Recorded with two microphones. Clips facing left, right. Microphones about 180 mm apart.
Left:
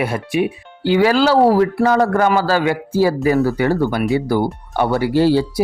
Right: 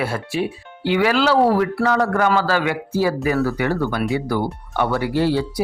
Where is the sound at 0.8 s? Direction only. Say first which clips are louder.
Left 4 dB; 35° left (ahead or behind).